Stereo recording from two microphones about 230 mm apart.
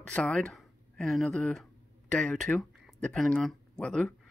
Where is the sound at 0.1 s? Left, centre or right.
Centre.